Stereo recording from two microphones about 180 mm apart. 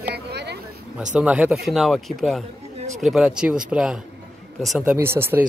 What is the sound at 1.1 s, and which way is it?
Speech, 5° right (ahead or behind).